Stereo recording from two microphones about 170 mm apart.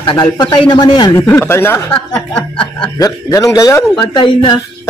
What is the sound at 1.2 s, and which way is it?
A man's voice, 10° left (ahead or behind).